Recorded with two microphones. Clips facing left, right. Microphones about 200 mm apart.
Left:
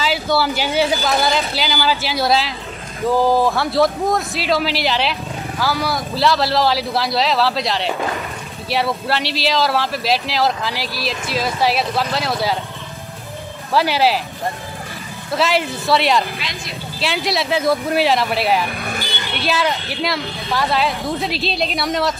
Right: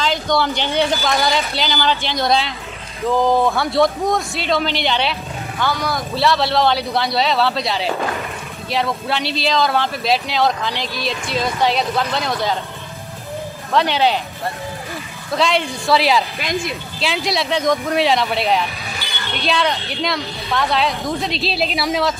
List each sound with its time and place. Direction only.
0.0 s speech: 5° left (ahead or behind)
13.7 s speech: 5° left (ahead or behind)
15.3 s speech: 5° left (ahead or behind)
16.3 s speech: 50° right (ahead or behind)
17.0 s speech: centre (ahead or behind)